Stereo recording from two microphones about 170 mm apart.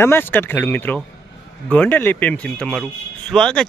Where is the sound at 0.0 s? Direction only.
15° left (ahead or behind).